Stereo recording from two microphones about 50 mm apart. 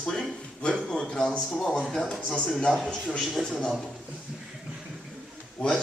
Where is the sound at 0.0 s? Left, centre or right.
Centre.